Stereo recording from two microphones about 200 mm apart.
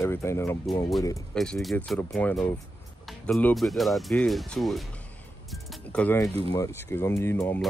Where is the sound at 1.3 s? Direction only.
5° left (ahead or behind).